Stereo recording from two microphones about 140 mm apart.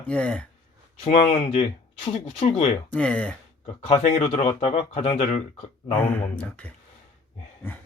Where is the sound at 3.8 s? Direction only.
55° left (ahead or behind).